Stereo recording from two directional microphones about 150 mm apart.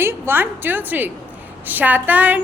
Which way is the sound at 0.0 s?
15° right (ahead or behind).